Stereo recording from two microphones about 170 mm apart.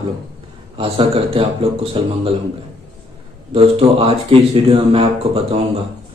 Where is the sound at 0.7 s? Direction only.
35° right (ahead or behind).